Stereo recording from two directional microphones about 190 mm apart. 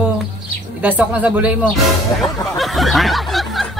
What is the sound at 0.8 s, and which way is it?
Speech, 5° right (ahead or behind).